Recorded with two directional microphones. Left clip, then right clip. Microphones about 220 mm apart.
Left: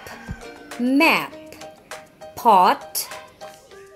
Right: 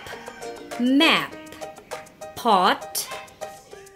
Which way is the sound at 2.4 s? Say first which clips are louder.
Left 4 dB; 15° right (ahead or behind).